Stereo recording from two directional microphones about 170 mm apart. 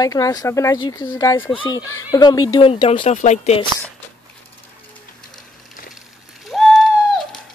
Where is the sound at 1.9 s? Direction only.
20° left (ahead or behind); by 3.6 s 40° left (ahead or behind).